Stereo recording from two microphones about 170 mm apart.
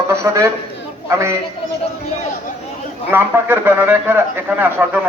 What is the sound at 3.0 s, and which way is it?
A man's voice, 10° right (ahead or behind).